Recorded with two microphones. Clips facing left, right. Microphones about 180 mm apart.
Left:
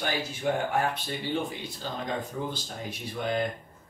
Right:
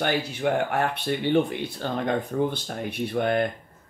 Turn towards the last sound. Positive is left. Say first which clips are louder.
# right 6 dB
turn(degrees=-60)  # may be behind; listen again after turning